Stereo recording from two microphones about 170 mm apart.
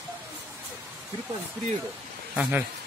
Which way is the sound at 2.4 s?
10° right (ahead or behind).